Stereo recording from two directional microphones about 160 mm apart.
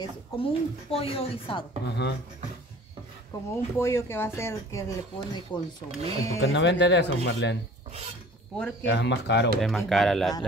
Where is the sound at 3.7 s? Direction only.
15° left (ahead or behind).